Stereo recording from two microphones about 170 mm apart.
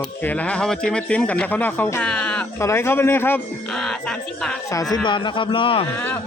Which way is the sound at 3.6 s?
Centre (ahead or behind).